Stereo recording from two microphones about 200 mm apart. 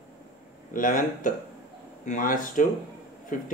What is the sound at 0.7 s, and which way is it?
Speech, 40° left (ahead or behind).